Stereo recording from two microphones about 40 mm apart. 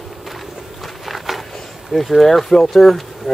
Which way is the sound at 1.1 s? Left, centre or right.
Centre.